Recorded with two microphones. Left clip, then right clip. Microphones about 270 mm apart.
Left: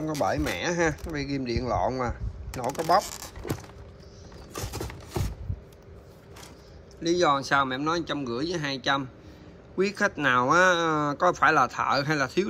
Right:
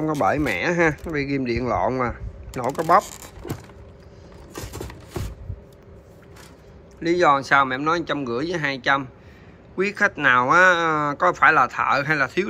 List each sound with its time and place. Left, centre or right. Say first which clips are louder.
0.0 s speech: right 6 dB; centre
7.0 s speech: right 6 dB; centre